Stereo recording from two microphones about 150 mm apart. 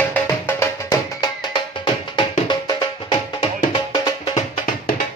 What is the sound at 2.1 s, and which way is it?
Music, 30° left (ahead or behind).